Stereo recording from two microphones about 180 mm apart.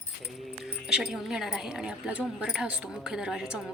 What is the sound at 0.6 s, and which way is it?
Speech, 5° right (ahead or behind).